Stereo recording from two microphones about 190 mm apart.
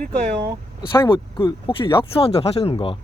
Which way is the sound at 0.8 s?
25° left (ahead or behind).